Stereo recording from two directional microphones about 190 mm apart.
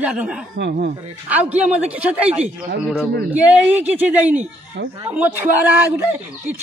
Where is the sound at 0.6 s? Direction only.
60° right (ahead or behind).